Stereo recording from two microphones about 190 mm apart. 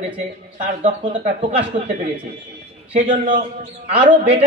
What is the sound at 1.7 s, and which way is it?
Speech, 30° right (ahead or behind).